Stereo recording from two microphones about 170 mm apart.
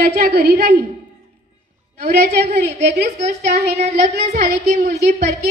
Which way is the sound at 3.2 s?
40° right (ahead or behind).